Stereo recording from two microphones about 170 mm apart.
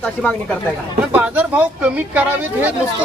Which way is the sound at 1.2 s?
10° right (ahead or behind).